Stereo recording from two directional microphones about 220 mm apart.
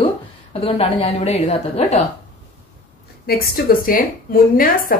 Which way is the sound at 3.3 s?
40° left (ahead or behind).